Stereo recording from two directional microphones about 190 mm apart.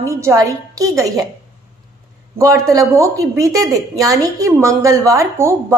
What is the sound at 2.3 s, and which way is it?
A woman's voice, 15° right (ahead or behind).